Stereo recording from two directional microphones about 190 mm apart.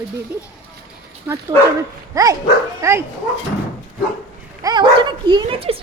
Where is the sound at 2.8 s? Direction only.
15° right (ahead or behind).